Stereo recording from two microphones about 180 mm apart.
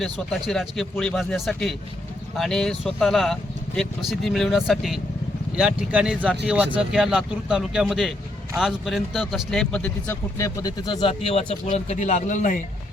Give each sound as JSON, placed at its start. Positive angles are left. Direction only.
{"t": 0.0, "sound": "a man's voice", "side_deg": 0}